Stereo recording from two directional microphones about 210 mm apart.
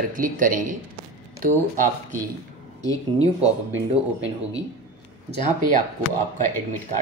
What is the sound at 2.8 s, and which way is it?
Speech, 15° left (ahead or behind).